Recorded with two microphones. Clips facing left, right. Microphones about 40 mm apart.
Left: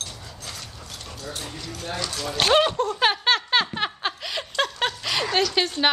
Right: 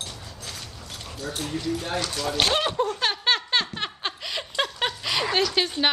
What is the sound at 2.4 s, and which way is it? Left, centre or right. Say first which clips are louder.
Speech: left 5 dB; centre.